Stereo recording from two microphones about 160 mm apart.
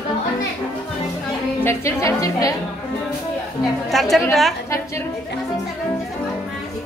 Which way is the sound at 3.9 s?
Centre (ahead or behind).